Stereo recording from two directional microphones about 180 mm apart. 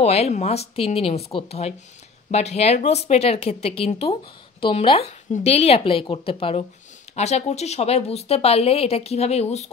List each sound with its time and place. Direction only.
0.0 s speech: 35° left (ahead or behind)